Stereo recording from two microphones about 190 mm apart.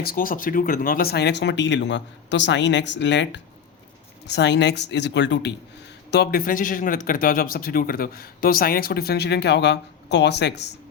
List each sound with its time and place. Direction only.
0.0 s speech: 50° left (ahead or behind); by 5.5 s 65° left (ahead or behind)
6.1 s speech: 55° left (ahead or behind)